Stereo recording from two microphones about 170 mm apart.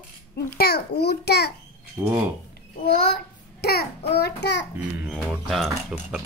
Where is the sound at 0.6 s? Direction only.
70° left (ahead or behind).